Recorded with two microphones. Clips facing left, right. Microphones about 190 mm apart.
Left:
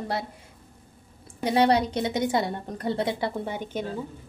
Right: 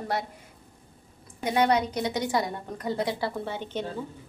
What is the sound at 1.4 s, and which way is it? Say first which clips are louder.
A woman's voice: left 2 dB; 30° left (ahead or behind).